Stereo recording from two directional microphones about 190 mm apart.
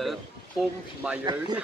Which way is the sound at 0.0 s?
Centre (ahead or behind).